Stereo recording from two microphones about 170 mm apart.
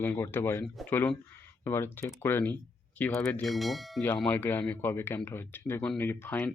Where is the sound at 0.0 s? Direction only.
10° left (ahead or behind).